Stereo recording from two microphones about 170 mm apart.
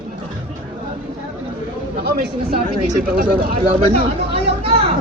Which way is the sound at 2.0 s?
65° right (ahead or behind).